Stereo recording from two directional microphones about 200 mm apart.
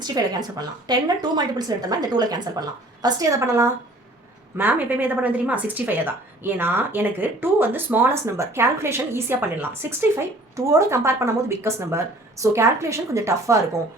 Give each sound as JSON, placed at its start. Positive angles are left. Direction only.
{"t": 0.0, "sound": "a woman's voice", "side_deg": -20}